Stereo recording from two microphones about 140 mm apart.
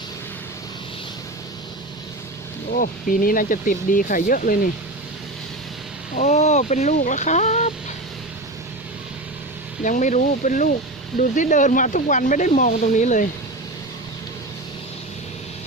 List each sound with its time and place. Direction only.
2.7 s speech: 80° left
6.1 s speech: 55° left (ahead or behind)
9.8 s speech: 65° left (ahead or behind)